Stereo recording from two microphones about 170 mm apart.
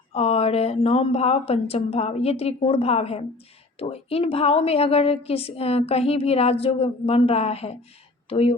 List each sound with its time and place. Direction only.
0.1 s a woman's voice: 35° left (ahead or behind)